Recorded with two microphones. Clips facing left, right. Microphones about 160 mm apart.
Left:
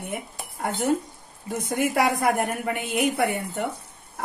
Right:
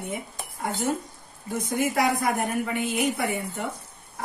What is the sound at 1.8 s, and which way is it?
A woman's voice, 60° left (ahead or behind).